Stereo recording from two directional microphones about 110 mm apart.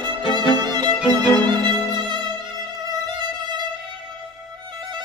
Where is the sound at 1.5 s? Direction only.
40° right (ahead or behind).